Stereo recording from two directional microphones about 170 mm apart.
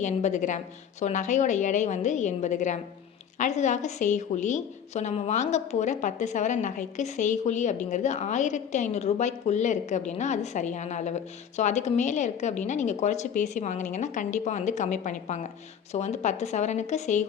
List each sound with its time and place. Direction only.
0.0 s a woman's voice: 45° left (ahead or behind)